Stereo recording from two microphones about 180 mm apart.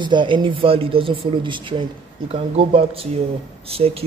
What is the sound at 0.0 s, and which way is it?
Speech, 25° right (ahead or behind).